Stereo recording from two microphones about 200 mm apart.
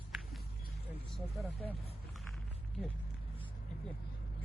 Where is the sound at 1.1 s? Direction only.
Centre (ahead or behind).